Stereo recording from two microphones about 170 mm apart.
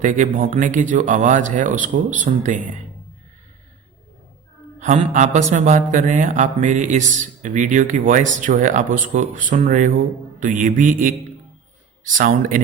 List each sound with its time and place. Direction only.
0.0 s speech: 45° right (ahead or behind)
4.8 s speech: 45° right (ahead or behind)
12.1 s speech: 50° right (ahead or behind)